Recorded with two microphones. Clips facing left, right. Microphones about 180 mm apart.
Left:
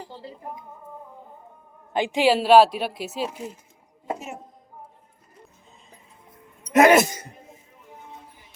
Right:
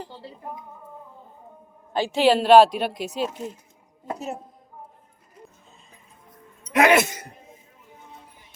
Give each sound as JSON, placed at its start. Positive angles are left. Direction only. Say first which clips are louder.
{"t": 1.9, "sound": "speech", "louder": "right 1 dB", "side_deg": 15}
{"t": 6.7, "sound": "speech", "louder": "left 3 dB", "side_deg": 40}